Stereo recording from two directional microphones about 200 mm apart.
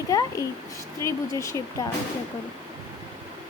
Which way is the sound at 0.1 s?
20° left (ahead or behind).